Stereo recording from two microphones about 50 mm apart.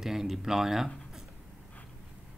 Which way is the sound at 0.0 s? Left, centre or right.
Centre.